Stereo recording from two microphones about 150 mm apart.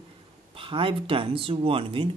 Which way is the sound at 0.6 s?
35° right (ahead or behind).